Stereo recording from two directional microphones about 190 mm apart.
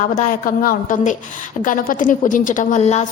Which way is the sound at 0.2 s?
45° left (ahead or behind).